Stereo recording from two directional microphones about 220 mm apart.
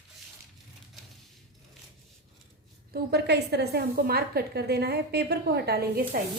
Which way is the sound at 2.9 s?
45° right (ahead or behind).